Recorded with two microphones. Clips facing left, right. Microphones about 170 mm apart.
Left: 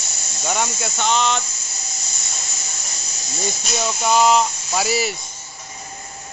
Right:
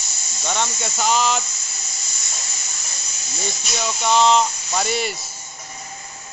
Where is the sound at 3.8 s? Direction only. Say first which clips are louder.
Even; 10° left (ahead or behind).